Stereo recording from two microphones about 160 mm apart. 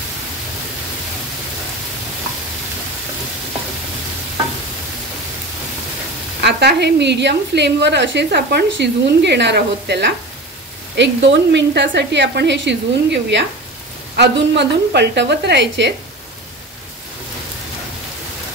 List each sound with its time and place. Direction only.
6.4 s a woman's voice: 90° right